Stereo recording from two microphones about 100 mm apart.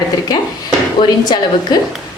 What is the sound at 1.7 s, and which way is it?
Speech, 45° left (ahead or behind).